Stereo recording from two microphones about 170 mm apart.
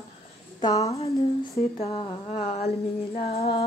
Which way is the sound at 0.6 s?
20° left (ahead or behind).